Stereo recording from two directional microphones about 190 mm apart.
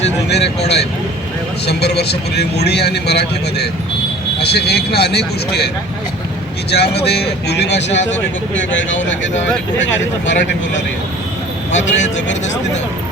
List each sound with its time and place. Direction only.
0.3 s a man's voice: 60° left (ahead or behind)
6.7 s a man's voice: 60° left (ahead or behind)
7.9 s speech: 75° left (ahead or behind)
11.7 s speech: 75° left (ahead or behind)